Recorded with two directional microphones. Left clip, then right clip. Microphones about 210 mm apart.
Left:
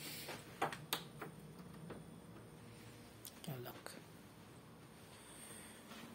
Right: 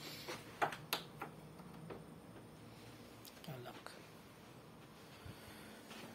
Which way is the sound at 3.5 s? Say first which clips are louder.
Left 1 dB; 40° left (ahead or behind).